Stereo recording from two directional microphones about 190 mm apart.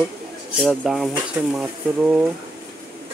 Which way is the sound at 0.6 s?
Centre (ahead or behind).